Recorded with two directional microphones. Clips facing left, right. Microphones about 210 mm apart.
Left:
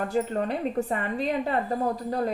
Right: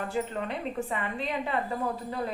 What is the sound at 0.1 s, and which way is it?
A woman's voice, 40° left (ahead or behind).